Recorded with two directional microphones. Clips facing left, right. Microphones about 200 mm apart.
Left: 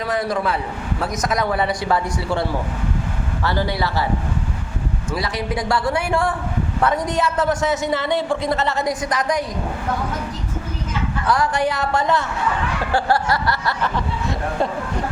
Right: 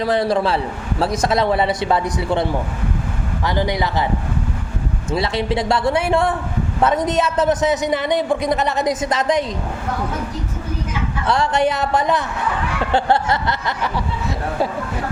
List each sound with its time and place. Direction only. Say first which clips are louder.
0.0 s a man's voice: right 4 dB; 30° right (ahead or behind)
5.1 s a man's voice: right 5 dB; 25° right (ahead or behind)
11.3 s a man's voice: right 2 dB; 25° right (ahead or behind)
14.3 s speech: right 1 dB; 5° right (ahead or behind)